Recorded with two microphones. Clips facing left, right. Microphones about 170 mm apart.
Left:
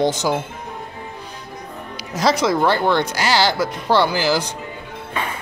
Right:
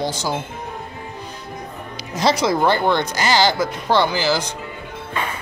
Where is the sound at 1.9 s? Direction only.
Centre (ahead or behind).